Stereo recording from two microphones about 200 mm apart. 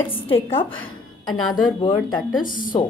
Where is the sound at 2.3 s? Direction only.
45° left (ahead or behind).